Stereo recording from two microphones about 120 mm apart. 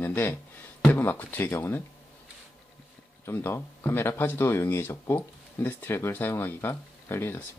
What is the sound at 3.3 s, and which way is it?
Speech, 20° left (ahead or behind).